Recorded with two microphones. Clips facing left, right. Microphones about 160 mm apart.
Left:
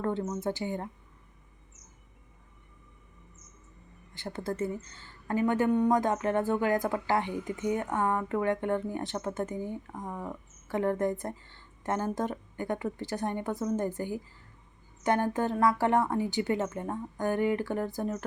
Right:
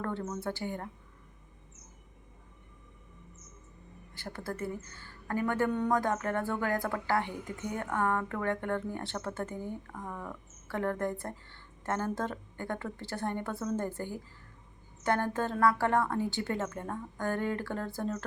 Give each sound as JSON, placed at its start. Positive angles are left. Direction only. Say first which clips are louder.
{"t": 0.0, "sound": "a woman's voice", "louder": "left 4 dB", "side_deg": 15}
{"t": 4.1, "sound": "a woman's voice", "louder": "left 4 dB", "side_deg": 20}